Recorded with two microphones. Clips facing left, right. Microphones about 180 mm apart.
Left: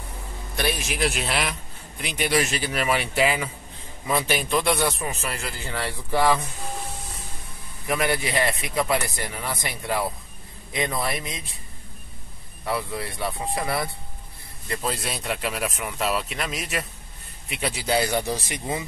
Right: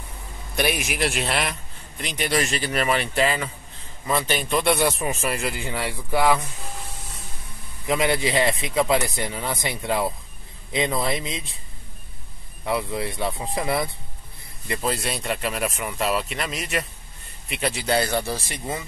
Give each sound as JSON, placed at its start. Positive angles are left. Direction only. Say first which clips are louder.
{"t": 0.6, "sound": "speech", "louder": "right 3 dB", "side_deg": -15}
{"t": 0.9, "sound": "speech", "louder": "right 1 dB", "side_deg": 0}
{"t": 4.9, "sound": "speech", "louder": "right 4 dB", "side_deg": -20}
{"t": 7.8, "sound": "speech", "louder": "right 3 dB", "side_deg": -20}
{"t": 12.6, "sound": "speech", "louder": "right 3 dB", "side_deg": -20}
{"t": 14.8, "sound": "speech", "louder": "right 3 dB", "side_deg": 0}